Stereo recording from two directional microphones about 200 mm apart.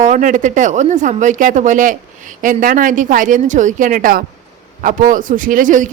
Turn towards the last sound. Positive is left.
turn(degrees=-40)  # may be behind; listen again after turning